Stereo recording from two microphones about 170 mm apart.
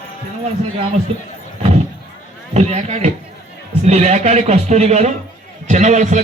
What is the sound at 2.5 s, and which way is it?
A man's voice, 40° right (ahead or behind).